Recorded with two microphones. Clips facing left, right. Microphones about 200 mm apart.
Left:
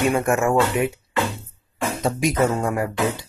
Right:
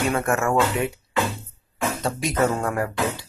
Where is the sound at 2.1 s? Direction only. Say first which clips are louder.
Left 3 dB; centre (ahead or behind).